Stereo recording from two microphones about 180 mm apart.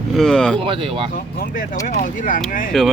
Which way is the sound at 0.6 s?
30° right (ahead or behind).